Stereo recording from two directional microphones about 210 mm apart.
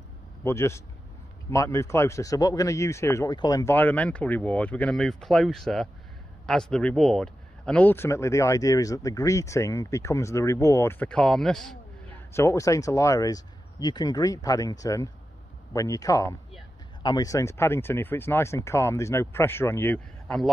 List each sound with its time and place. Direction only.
0.4 s speech: 10° left (ahead or behind)
12.3 s speech: 15° left (ahead or behind)